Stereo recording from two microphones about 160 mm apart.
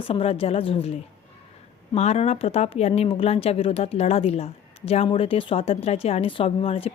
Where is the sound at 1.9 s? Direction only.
40° left (ahead or behind).